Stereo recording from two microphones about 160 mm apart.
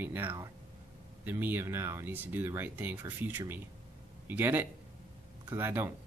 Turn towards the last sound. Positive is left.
turn(degrees=-15)  # may be behind; listen again after turning